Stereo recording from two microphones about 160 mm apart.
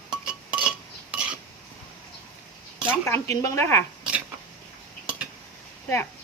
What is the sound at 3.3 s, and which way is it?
Speech, 15° left (ahead or behind).